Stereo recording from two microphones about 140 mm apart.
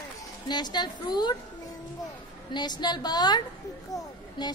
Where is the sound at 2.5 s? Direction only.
30° left (ahead or behind).